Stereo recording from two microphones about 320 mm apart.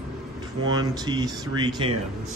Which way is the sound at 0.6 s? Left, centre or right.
Centre.